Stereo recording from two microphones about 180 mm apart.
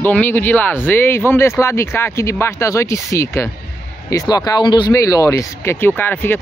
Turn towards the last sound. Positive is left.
turn(degrees=10)  # may be behind; listen again after turning